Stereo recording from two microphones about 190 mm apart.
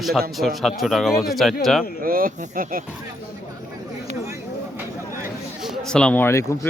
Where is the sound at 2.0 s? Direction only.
50° right (ahead or behind).